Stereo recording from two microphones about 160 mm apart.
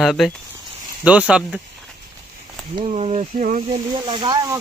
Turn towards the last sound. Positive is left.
turn(degrees=-25)  # may be behind; listen again after turning